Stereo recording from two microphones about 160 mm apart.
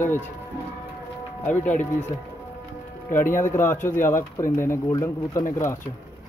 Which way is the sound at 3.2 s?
55° left (ahead or behind).